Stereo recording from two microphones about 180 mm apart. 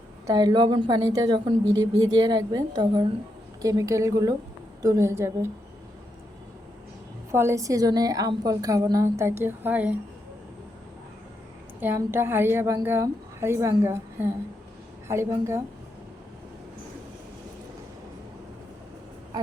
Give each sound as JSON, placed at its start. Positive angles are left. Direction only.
{"t": 0.3, "sound": "a woman's voice", "side_deg": -25}
{"t": 7.3, "sound": "a woman's voice", "side_deg": -15}
{"t": 11.8, "sound": "a woman's voice", "side_deg": -10}